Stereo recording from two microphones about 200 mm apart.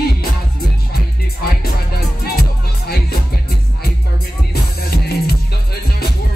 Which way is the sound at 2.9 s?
50° left (ahead or behind).